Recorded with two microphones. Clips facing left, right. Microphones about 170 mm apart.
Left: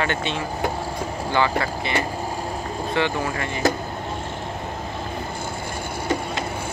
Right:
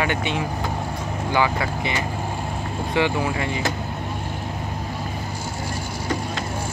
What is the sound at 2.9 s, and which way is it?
Speech, 15° right (ahead or behind).